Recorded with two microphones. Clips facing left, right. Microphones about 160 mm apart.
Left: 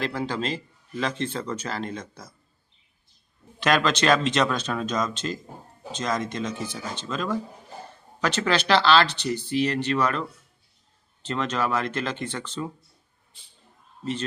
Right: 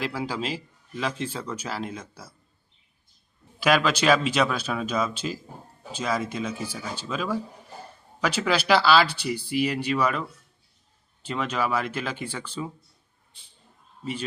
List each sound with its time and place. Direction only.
0.0 s a man's voice: 5° right (ahead or behind)
3.6 s a man's voice: 5° right (ahead or behind)
14.0 s a man's voice: 10° right (ahead or behind)